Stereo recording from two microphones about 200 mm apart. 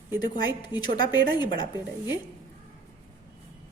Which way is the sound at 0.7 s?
20° left (ahead or behind).